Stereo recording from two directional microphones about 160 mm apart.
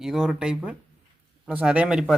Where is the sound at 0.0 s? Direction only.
Centre (ahead or behind).